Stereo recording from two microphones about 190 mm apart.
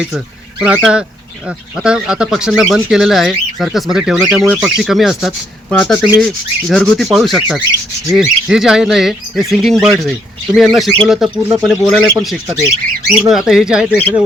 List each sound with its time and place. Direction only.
0.6 s speech: 5° right (ahead or behind)